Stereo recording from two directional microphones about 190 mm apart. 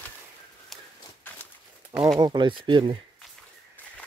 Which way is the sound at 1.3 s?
10° left (ahead or behind).